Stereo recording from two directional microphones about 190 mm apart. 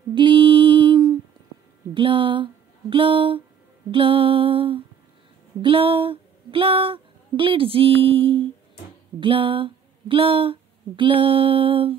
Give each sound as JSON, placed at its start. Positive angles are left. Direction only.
{"t": 0.1, "sound": "mantra", "side_deg": -25}
{"t": 2.0, "sound": "speech", "side_deg": -25}
{"t": 3.9, "sound": "music", "side_deg": -30}
{"t": 5.6, "sound": "speech", "side_deg": -30}